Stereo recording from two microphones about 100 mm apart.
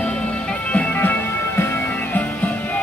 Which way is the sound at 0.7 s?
15° left (ahead or behind).